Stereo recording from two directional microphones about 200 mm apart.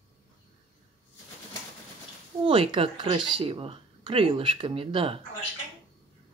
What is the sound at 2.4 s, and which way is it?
Speech, 25° right (ahead or behind).